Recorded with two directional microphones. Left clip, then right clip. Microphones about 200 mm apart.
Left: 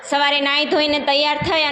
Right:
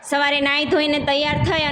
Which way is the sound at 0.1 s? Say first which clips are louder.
Left 1 dB; 20° right (ahead or behind).